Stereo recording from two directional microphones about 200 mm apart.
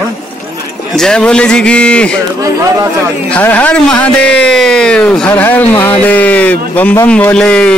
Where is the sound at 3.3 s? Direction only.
10° left (ahead or behind).